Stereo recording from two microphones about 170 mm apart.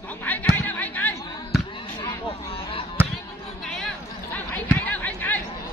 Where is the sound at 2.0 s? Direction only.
30° left (ahead or behind).